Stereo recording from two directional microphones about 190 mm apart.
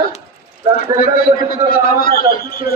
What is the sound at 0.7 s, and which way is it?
A man's voice, 50° left (ahead or behind).